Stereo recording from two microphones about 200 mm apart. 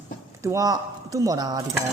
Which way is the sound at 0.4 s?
15° right (ahead or behind).